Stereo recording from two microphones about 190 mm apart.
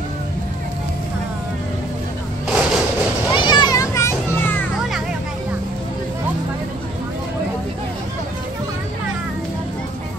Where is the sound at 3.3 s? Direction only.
25° left (ahead or behind).